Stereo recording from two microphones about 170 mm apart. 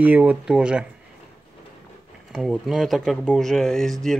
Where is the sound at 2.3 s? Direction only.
Centre (ahead or behind).